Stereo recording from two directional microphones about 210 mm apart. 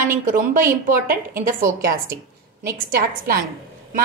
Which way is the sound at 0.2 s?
40° right (ahead or behind).